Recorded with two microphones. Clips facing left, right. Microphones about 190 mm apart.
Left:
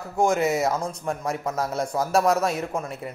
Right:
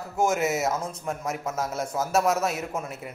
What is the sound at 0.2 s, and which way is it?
Speech, 5° right (ahead or behind).